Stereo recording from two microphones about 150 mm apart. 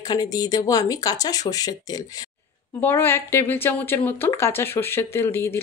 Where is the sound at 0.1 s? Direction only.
25° left (ahead or behind).